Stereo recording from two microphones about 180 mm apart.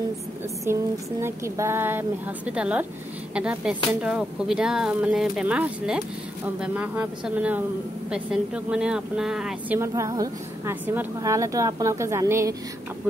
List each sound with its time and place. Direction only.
0.7 s speech: 15° right (ahead or behind)
9.8 s speech: 20° right (ahead or behind)